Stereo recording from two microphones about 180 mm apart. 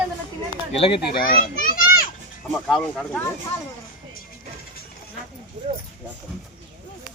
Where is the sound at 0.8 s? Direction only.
30° left (ahead or behind).